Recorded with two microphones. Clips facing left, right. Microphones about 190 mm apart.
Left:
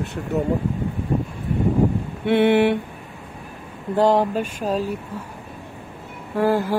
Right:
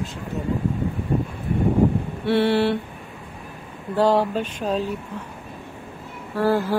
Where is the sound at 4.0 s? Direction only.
20° left (ahead or behind).